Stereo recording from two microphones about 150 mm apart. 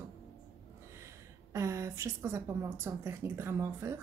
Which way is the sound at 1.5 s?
20° right (ahead or behind).